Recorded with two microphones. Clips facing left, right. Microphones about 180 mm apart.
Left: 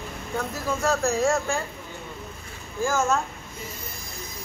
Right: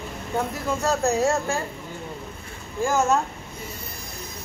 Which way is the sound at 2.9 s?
20° right (ahead or behind).